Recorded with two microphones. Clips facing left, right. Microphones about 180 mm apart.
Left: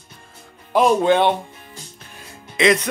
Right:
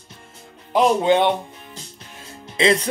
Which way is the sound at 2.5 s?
30° right (ahead or behind).